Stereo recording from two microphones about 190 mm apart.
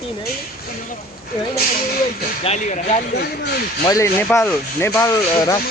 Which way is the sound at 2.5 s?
35° left (ahead or behind).